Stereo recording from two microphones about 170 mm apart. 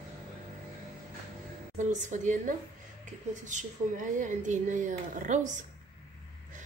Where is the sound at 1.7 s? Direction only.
45° right (ahead or behind).